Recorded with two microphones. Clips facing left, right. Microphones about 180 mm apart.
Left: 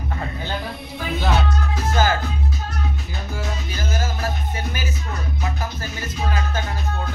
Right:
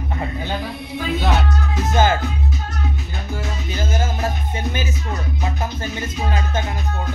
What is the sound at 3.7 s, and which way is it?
Music, 25° right (ahead or behind).